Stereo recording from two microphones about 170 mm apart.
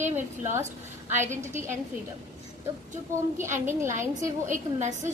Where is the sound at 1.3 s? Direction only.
45° right (ahead or behind).